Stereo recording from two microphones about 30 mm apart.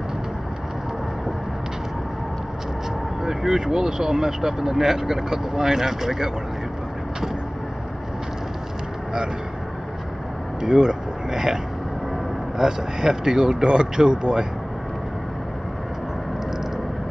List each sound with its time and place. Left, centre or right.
3.3 s speech: right
10.6 s a sound: right
12.5 s speech: centre